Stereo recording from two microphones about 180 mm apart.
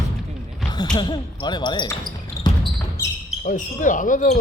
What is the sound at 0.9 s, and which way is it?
Basketball bounce, 25° left (ahead or behind).